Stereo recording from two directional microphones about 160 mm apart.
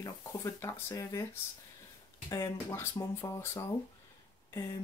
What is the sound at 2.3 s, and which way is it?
Speech, 20° left (ahead or behind).